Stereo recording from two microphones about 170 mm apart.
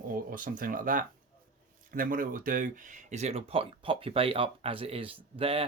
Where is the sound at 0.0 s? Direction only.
55° right (ahead or behind).